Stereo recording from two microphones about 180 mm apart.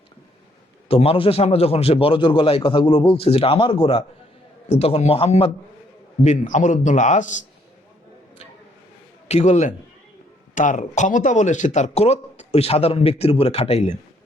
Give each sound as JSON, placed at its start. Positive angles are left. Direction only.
{"t": 0.9, "sound": "a man's voice", "side_deg": 35}
{"t": 9.2, "sound": "speech", "side_deg": 40}